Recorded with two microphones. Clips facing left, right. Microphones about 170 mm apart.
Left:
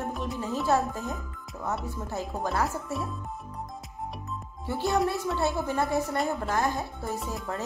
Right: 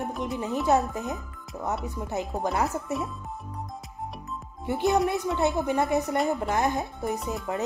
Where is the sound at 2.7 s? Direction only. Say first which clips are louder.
Right 3 dB; centre (ahead or behind).